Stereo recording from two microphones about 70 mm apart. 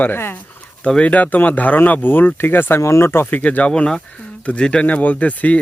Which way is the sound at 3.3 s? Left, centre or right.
Left.